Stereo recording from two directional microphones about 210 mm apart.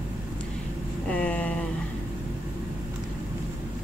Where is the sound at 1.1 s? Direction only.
5° left (ahead or behind).